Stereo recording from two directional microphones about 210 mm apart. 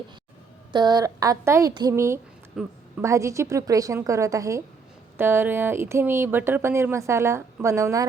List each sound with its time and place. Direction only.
0.7 s speech: 20° right (ahead or behind)
2.5 s a woman's voice: 5° right (ahead or behind)
3.0 s speech: 15° right (ahead or behind)